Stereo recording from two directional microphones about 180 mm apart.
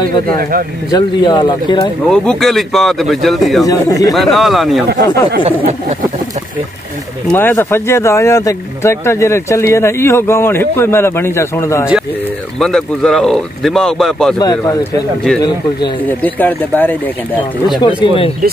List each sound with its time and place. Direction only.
0.4 s speech: 50° right (ahead or behind)
0.9 s speech: 25° left (ahead or behind)
2.0 s speech: centre (ahead or behind)
3.6 s speech: 20° left (ahead or behind)
4.1 s speech: centre (ahead or behind)
5.0 s speech: 20° left (ahead or behind)
7.2 s speech: 15° left (ahead or behind)
12.5 s speech: 5° left (ahead or behind)
14.4 s speech: 20° left (ahead or behind)
16.2 s speech: 10° left (ahead or behind)
17.7 s speech: 30° left (ahead or behind)